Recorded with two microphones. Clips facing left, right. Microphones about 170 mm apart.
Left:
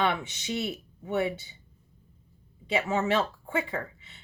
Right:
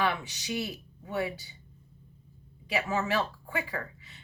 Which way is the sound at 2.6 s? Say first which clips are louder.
Left 3 dB; 25° left (ahead or behind).